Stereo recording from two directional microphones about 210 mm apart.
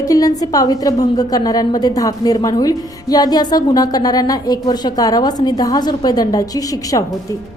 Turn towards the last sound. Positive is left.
turn(degrees=15)  # may be behind; listen again after turning